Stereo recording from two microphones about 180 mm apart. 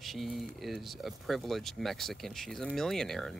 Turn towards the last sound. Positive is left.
turn(degrees=0)  # may be behind; listen again after turning